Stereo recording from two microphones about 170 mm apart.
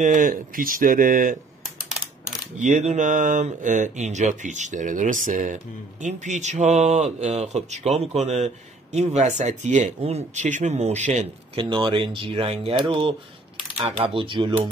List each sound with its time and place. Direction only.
0.0 s speech: 50° right (ahead or behind)
2.6 s speech: 45° right (ahead or behind)